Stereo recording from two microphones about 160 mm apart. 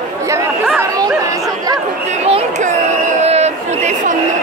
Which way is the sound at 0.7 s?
20° right (ahead or behind).